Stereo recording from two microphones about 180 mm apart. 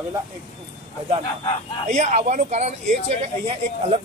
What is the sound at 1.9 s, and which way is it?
Speech, 40° right (ahead or behind).